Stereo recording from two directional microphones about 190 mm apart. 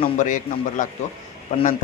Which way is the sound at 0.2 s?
40° left (ahead or behind).